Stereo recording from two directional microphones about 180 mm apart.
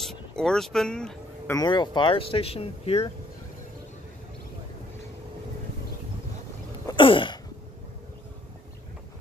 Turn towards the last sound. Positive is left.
turn(degrees=30)  # may be behind; listen again after turning